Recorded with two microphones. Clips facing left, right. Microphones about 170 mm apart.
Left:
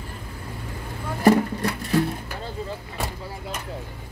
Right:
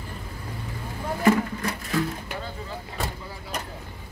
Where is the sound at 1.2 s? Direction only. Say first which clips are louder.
Left 4 dB; 35° left (ahead or behind).